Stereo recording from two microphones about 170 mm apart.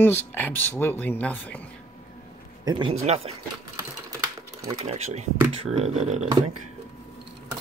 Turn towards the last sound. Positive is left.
turn(degrees=-45)  # may be behind; listen again after turning